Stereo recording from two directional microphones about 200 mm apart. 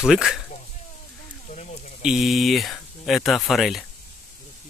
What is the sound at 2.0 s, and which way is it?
Speech, centre (ahead or behind).